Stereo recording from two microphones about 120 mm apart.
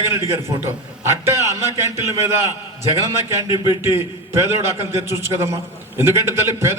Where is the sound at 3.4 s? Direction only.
40° left (ahead or behind).